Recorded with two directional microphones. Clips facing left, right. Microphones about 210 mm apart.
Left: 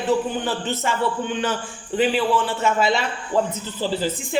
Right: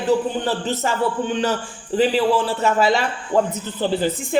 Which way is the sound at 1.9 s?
35° right (ahead or behind).